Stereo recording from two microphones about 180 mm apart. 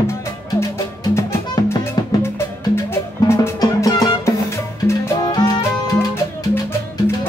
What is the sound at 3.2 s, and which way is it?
Music, 15° left (ahead or behind).